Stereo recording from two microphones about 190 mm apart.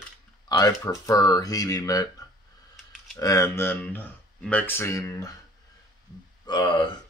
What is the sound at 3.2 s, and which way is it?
Speech, 15° left (ahead or behind).